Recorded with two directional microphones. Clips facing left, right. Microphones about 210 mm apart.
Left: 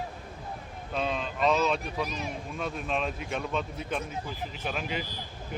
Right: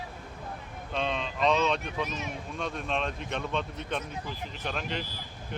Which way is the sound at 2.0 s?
35° left (ahead or behind).